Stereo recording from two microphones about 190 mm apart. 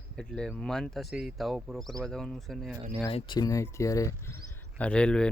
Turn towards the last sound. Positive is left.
turn(degrees=5)  # may be behind; listen again after turning